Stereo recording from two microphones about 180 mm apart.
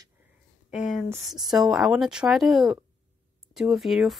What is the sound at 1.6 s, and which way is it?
Speech, centre (ahead or behind).